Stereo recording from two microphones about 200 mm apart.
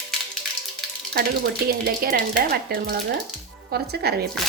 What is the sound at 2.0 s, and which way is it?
Speech, 50° right (ahead or behind).